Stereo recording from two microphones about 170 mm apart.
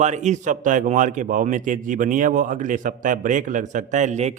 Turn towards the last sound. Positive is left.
turn(degrees=-45)  # may be behind; listen again after turning